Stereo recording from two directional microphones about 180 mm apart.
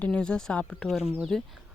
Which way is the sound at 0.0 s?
5° left (ahead or behind).